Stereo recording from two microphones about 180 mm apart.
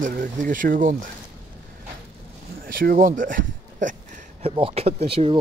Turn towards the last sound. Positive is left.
turn(degrees=-35)  # may be behind; listen again after turning